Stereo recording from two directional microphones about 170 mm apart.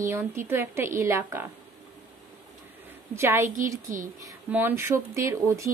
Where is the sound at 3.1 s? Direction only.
15° right (ahead or behind).